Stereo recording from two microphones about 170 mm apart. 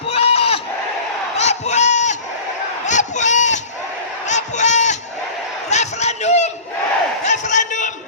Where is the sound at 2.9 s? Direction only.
45° left (ahead or behind).